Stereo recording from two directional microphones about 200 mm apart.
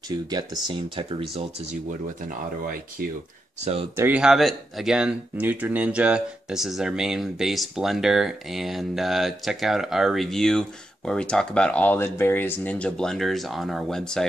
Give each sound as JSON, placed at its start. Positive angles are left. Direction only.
{"t": 0.1, "sound": "speech", "side_deg": -20}
{"t": 2.2, "sound": "speech", "side_deg": -45}
{"t": 3.9, "sound": "speech", "side_deg": -10}